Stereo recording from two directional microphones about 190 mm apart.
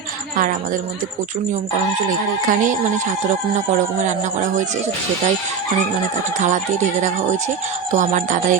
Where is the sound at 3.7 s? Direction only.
40° right (ahead or behind).